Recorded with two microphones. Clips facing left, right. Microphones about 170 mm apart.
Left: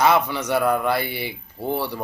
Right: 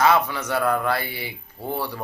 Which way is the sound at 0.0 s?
15° left (ahead or behind).